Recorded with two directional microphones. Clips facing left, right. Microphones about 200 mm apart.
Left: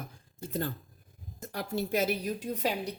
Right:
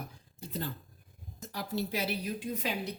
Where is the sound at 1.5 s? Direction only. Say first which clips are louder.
Left 3 dB; 50° left (ahead or behind).